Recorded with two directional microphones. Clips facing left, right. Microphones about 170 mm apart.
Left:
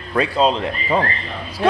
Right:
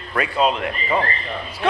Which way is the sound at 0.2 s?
30° left (ahead or behind).